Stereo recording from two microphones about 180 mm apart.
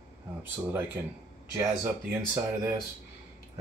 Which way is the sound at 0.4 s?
10° right (ahead or behind).